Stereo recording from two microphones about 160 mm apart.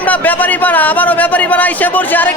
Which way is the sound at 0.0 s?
10° left (ahead or behind).